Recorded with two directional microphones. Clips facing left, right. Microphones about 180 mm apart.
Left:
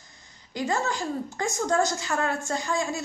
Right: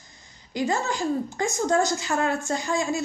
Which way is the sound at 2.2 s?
15° right (ahead or behind).